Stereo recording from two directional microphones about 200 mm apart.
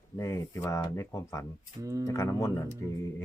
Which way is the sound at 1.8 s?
15° right (ahead or behind).